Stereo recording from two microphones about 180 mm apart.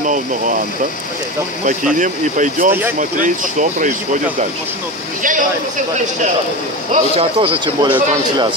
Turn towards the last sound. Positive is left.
turn(degrees=-30)  # may be behind; listen again after turning